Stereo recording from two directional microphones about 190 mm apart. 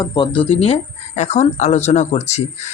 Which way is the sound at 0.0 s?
25° left (ahead or behind).